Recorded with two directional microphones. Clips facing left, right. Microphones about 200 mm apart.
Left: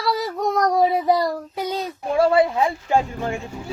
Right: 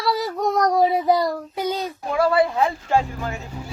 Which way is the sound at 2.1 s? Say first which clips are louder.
Left 2 dB; 25° left (ahead or behind).